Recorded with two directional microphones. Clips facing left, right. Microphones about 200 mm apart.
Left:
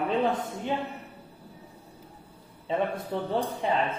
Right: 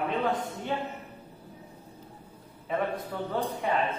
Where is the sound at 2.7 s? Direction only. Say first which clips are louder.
Left 2 dB; 25° left (ahead or behind).